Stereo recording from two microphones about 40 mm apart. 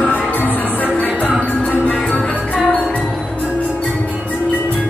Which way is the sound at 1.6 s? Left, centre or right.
Left.